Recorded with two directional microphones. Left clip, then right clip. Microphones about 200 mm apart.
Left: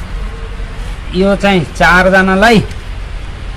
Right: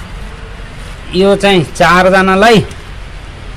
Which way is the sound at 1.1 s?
55° right (ahead or behind).